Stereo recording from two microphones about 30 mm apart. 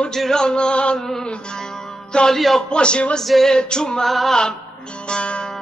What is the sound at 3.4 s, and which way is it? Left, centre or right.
Music, left.